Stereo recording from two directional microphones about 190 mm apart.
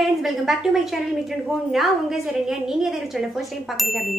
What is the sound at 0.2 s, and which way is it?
A woman's voice, centre (ahead or behind).